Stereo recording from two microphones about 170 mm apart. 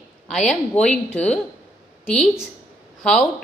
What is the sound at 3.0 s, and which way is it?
Speech, 5° left (ahead or behind).